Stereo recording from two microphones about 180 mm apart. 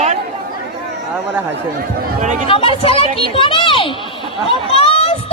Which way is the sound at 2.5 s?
30° left (ahead or behind).